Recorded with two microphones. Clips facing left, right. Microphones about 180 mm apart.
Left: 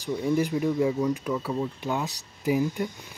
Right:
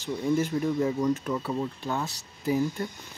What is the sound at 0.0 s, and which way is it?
Speech, 15° left (ahead or behind).